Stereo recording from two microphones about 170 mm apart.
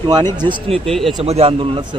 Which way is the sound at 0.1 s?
25° right (ahead or behind).